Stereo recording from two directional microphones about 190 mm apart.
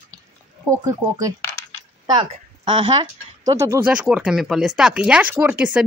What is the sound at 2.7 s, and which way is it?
Speech, 25° right (ahead or behind).